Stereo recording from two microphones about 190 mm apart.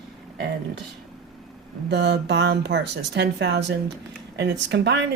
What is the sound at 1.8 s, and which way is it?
Speech, 60° right (ahead or behind).